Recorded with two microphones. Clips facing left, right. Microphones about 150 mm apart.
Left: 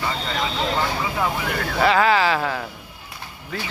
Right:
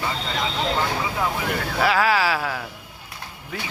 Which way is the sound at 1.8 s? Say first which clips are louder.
Left 3 dB; 5° right (ahead or behind).